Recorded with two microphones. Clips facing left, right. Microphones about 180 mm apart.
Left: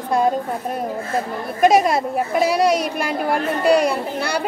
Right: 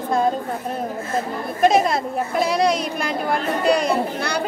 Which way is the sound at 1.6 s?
10° left (ahead or behind).